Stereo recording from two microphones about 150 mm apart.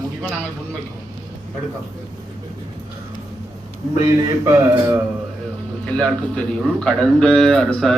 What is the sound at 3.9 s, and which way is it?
A man's voice, 20° right (ahead or behind).